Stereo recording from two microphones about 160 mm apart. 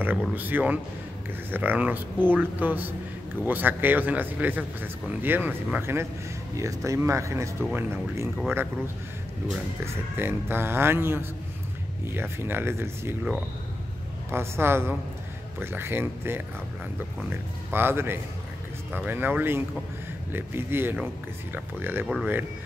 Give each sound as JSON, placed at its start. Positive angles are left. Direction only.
{"t": 0.4, "sound": "speech", "side_deg": -10}
{"t": 14.3, "sound": "speech", "side_deg": -15}
{"t": 22.0, "sound": "speech", "side_deg": 0}